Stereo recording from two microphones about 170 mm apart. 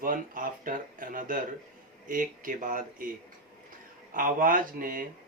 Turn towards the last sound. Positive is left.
turn(degrees=-55)  # may be behind; listen again after turning